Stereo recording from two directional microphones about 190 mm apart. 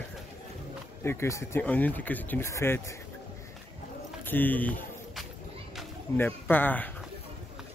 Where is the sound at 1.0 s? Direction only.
15° left (ahead or behind).